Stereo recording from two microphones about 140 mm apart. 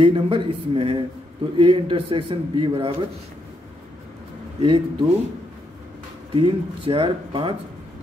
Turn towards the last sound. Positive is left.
turn(degrees=-40)  # may be behind; listen again after turning